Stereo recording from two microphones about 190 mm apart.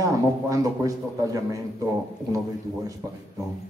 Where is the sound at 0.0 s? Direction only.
15° right (ahead or behind).